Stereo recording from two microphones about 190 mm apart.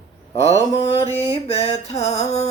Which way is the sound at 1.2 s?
35° left (ahead or behind).